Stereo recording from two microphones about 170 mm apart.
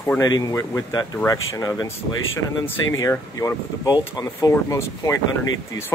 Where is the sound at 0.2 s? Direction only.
20° left (ahead or behind).